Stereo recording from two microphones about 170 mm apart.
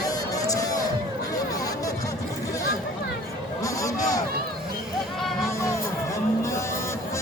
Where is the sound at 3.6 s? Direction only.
20° left (ahead or behind).